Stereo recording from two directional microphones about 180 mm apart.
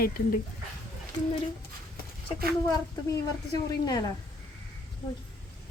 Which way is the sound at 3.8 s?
20° left (ahead or behind).